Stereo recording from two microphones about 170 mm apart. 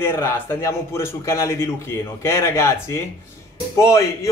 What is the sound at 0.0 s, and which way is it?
A man's voice, 15° left (ahead or behind).